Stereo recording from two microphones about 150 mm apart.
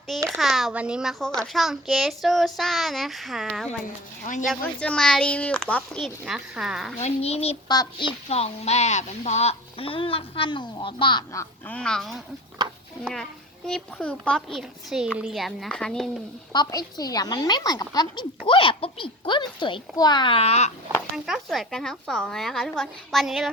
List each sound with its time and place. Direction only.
0.3 s a child's voice: centre (ahead or behind)
7.0 s a child's voice: 45° left (ahead or behind)
7.7 s a woman's voice: 30° left (ahead or behind)
11.3 s speech: 20° left (ahead or behind)
11.8 s a child's voice: 5° left (ahead or behind)
12.6 s a sound: 25° right (ahead or behind)
13.7 s a child's voice: 5° left (ahead or behind)
16.5 s a woman's voice: 25° left (ahead or behind); by 20.7 s 45° left (ahead or behind)
21.2 s a child's voice: centre (ahead or behind)